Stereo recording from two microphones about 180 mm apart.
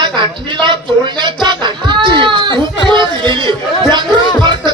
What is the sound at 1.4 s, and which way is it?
Cat, 25° right (ahead or behind).